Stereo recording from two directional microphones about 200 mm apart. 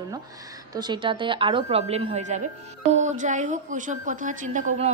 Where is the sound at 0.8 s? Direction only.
25° right (ahead or behind).